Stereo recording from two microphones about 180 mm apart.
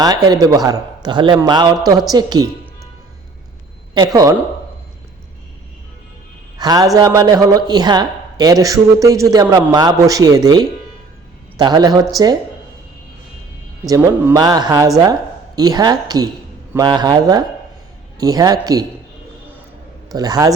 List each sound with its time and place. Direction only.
0.0 s a woman's voice: 20° right (ahead or behind)
3.9 s speech: 20° right (ahead or behind)
6.6 s a woman's voice: 20° right (ahead or behind)
13.8 s a woman's voice: 20° right (ahead or behind)
20.1 s a woman's voice: 20° right (ahead or behind)